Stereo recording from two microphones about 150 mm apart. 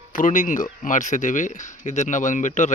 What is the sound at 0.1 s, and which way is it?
Speech, 60° left (ahead or behind).